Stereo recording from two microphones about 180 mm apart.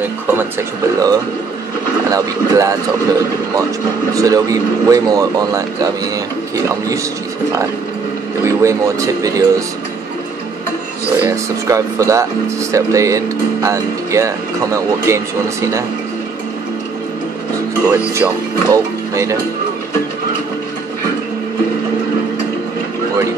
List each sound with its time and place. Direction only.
0.0 s speech: 10° right (ahead or behind)
4.1 s speech: 20° right (ahead or behind)
8.5 s speech: 15° right (ahead or behind)
11.2 s speech: 15° right (ahead or behind)
18.1 s speech: 15° right (ahead or behind)